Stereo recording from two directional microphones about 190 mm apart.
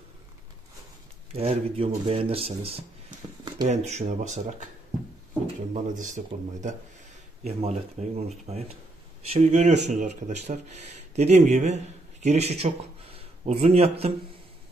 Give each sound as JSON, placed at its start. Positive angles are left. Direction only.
{"t": 1.3, "sound": "speech", "side_deg": -30}
{"t": 5.7, "sound": "speech", "side_deg": -40}